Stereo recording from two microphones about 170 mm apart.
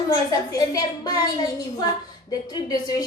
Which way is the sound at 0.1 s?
20° left (ahead or behind).